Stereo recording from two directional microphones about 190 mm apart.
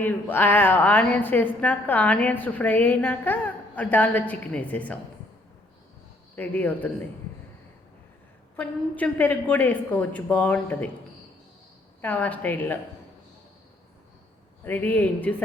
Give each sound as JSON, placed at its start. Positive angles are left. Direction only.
{"t": 0.0, "sound": "a woman's voice", "side_deg": 10}
{"t": 6.3, "sound": "a woman's voice", "side_deg": 10}
{"t": 8.5, "sound": "a woman's voice", "side_deg": 10}
{"t": 12.0, "sound": "a woman's voice", "side_deg": 10}
{"t": 14.6, "sound": "a woman's voice", "side_deg": 10}